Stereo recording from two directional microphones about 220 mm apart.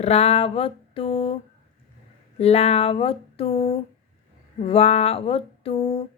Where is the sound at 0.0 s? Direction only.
30° left (ahead or behind).